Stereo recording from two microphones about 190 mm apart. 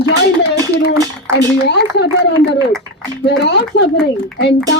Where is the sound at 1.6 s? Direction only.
60° left (ahead or behind).